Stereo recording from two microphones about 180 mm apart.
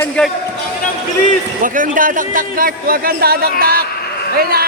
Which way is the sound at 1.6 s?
50° right (ahead or behind).